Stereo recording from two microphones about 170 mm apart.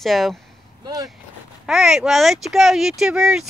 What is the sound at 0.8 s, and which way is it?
Speech, 20° right (ahead or behind).